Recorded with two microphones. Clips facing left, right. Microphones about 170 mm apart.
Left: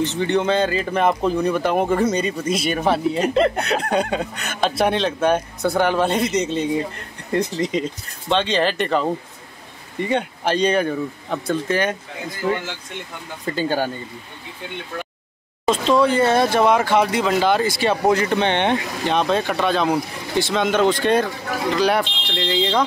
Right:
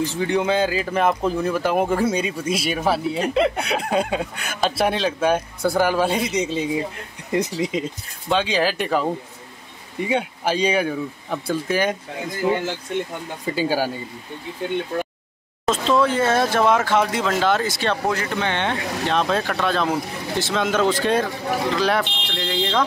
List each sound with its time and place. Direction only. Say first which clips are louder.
0.0 s speech: left 2 dB; 10° right (ahead or behind)
13.5 s speech: even; 10° right (ahead or behind)
15.6 s speech: left 2 dB; centre (ahead or behind)
18.0 s speech: left 5 dB; 20° left (ahead or behind)
19.0 s speech: left 2 dB; centre (ahead or behind)